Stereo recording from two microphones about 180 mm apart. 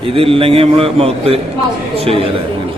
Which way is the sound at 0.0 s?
30° right (ahead or behind).